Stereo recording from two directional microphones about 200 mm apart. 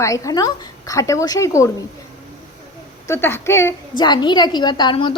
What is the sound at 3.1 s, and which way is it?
A woman's voice, 10° left (ahead or behind).